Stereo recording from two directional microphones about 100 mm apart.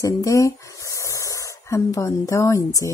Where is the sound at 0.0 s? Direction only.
30° left (ahead or behind).